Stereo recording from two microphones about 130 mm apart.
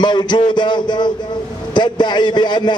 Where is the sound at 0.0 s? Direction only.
35° left (ahead or behind).